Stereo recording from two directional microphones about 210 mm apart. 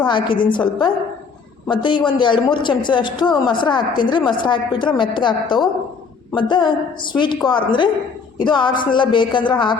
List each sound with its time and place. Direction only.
0.0 s a man's voice: 20° left (ahead or behind)